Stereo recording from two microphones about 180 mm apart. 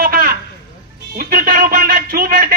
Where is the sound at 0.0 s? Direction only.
55° right (ahead or behind).